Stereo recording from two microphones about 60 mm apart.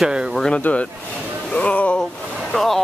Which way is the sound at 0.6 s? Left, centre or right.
Left.